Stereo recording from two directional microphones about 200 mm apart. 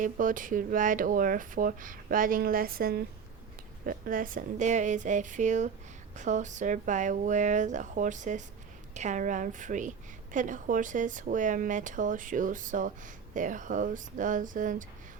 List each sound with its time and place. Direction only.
0.0 s a woman's voice: 40° right (ahead or behind)